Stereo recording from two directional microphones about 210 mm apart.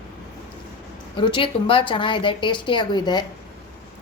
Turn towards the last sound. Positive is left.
turn(degrees=20)  # may be behind; listen again after turning